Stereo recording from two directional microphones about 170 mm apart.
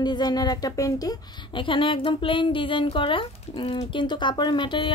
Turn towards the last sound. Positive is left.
turn(degrees=30)  # may be behind; listen again after turning